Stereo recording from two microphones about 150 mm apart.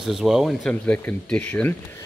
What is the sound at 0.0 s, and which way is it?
Speech, centre (ahead or behind).